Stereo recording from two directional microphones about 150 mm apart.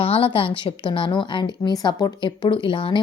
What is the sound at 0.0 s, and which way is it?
Speech, 40° left (ahead or behind).